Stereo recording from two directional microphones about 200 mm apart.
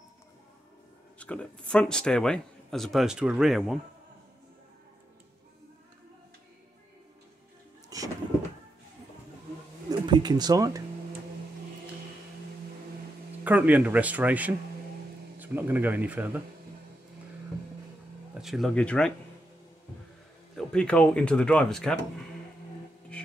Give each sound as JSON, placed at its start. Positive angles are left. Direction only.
{"t": 1.2, "sound": "a man's voice", "side_deg": 5}
{"t": 7.9, "sound": "a sound", "side_deg": -15}
{"t": 9.8, "sound": "a sound", "side_deg": -20}
{"t": 13.4, "sound": "speech", "side_deg": -10}
{"t": 18.4, "sound": "speech", "side_deg": 0}
{"t": 20.5, "sound": "a man's voice", "side_deg": 5}